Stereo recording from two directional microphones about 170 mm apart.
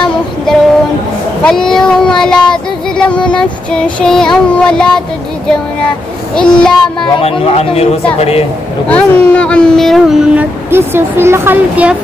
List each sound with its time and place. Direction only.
1.4 s child singing: 5° left (ahead or behind)
6.3 s child singing: 5° left (ahead or behind)
7.2 s speech: 35° left (ahead or behind)
8.8 s child singing: 10° left (ahead or behind); by 12.0 s 10° right (ahead or behind)